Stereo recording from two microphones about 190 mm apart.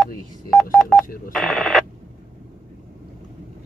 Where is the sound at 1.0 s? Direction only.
50° left (ahead or behind).